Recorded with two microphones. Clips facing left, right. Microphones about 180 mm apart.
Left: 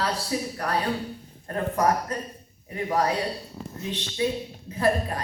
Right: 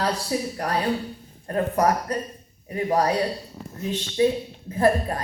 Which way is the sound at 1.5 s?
35° right (ahead or behind).